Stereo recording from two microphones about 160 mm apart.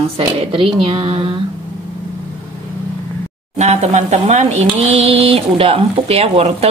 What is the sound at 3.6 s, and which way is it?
Speech, 45° right (ahead or behind).